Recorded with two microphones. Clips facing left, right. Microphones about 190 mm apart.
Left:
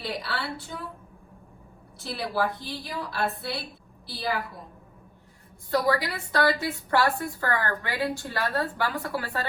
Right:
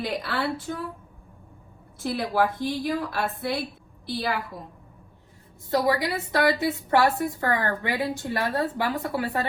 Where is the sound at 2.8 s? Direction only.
55° right (ahead or behind).